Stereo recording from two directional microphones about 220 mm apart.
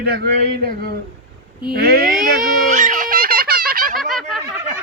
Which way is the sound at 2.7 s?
35° right (ahead or behind).